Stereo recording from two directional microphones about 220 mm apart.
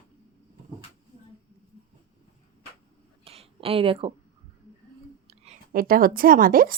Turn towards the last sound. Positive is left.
turn(degrees=-40)  # may be behind; listen again after turning